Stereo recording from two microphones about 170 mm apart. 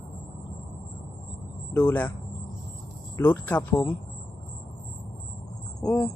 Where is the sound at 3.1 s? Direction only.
10° left (ahead or behind).